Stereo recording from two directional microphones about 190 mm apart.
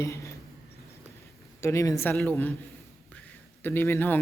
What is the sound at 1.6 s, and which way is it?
Speech, 15° left (ahead or behind).